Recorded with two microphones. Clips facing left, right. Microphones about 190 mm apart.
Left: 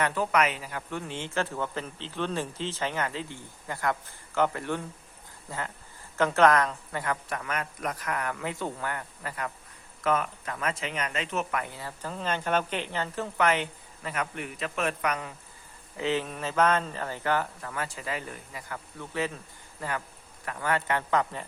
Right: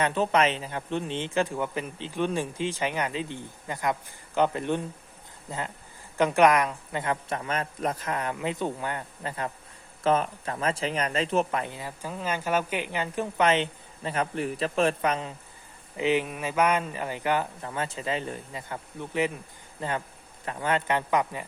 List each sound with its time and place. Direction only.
0.0 s speech: 20° right (ahead or behind)